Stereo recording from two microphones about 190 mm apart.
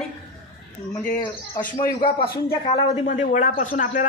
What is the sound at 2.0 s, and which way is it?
A man's voice, 30° left (ahead or behind).